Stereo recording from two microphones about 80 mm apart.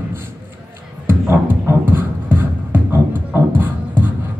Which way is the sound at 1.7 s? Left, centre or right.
Right.